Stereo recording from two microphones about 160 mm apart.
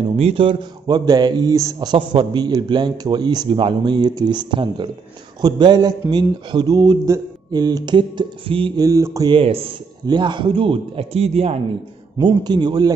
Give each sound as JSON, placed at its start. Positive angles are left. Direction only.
{"t": 0.1, "sound": "a man's voice", "side_deg": -35}
{"t": 12.2, "sound": "a man's voice", "side_deg": -25}